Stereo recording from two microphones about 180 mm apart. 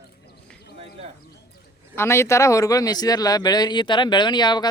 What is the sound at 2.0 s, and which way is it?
A man's voice, 15° left (ahead or behind).